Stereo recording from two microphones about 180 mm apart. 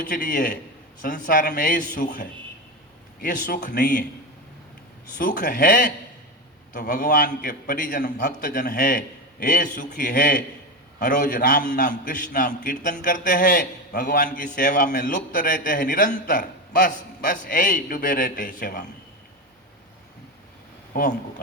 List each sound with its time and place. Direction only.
0.0 s a man's voice: 50° left (ahead or behind)
5.1 s a man's voice: 50° left (ahead or behind)
6.9 s a man's voice: 45° left (ahead or behind)
20.9 s a man's voice: 45° left (ahead or behind)